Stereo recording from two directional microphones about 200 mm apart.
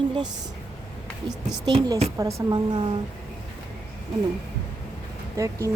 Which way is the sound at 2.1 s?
15° right (ahead or behind).